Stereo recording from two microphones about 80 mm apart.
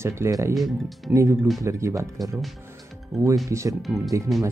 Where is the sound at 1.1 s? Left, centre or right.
Right.